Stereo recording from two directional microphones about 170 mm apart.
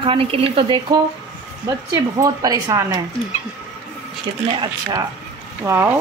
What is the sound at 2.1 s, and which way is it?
Speech, 20° right (ahead or behind).